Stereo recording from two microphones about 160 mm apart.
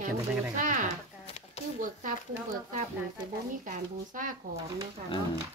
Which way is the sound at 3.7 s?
55° right (ahead or behind).